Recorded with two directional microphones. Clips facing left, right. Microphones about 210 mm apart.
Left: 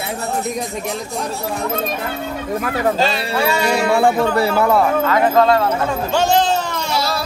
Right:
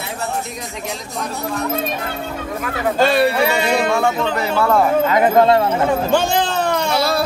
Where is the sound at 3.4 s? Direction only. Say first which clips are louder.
Even; 20° right (ahead or behind).